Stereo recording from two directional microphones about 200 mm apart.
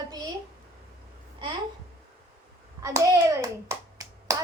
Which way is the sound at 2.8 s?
15° right (ahead or behind).